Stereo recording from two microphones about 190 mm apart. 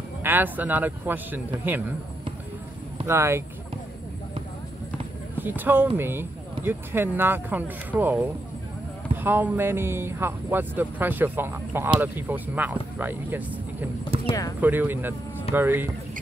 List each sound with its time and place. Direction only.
0.2 s speech: 10° right (ahead or behind)
3.1 s speech: 15° right (ahead or behind)
5.4 s speech: 10° right (ahead or behind)
14.2 s speech: 20° left (ahead or behind)
14.6 s speech: 10° right (ahead or behind)